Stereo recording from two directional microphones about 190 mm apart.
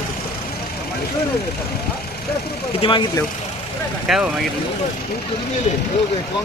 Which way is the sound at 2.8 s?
30° left (ahead or behind).